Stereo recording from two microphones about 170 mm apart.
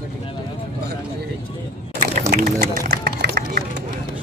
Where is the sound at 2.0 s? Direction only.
45° right (ahead or behind).